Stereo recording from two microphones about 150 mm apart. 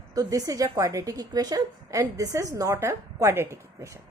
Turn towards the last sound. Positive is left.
turn(degrees=-20)  # may be behind; listen again after turning